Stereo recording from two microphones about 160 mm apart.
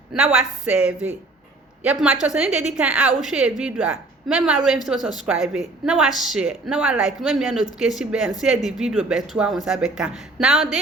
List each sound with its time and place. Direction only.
0.1 s a woman's voice: 5° right (ahead or behind)